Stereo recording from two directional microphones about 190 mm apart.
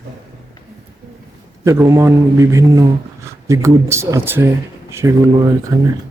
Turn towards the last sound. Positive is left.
turn(degrees=-20)  # may be behind; listen again after turning